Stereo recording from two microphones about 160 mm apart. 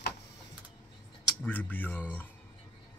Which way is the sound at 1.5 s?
10° left (ahead or behind).